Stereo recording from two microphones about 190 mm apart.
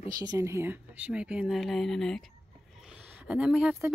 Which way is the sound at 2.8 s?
5° right (ahead or behind).